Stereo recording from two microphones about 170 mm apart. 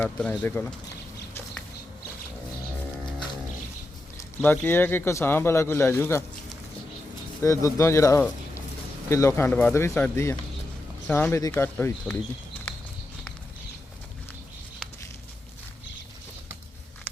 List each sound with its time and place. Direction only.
0.0 s speech: 10° left (ahead or behind)
4.4 s speech: 10° left (ahead or behind)
7.4 s speech: 15° left (ahead or behind)